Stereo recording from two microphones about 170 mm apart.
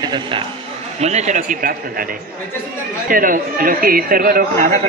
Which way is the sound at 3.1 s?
55° right (ahead or behind).